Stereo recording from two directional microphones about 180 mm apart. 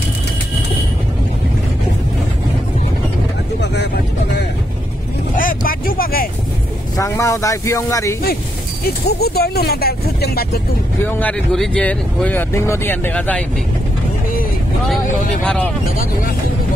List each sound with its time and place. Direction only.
3.6 s vehicle: 70° left (ahead or behind)
5.3 s vehicle: 50° left (ahead or behind)
7.0 s speech: 15° left (ahead or behind)
8.8 s speech: 60° left (ahead or behind)
11.0 s speech: 10° left (ahead or behind)
15.4 s speech: 5° left (ahead or behind)